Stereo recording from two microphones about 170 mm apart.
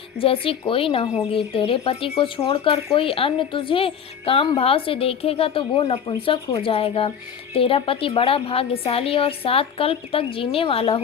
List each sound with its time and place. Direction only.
0.2 s a woman's voice: 35° left (ahead or behind)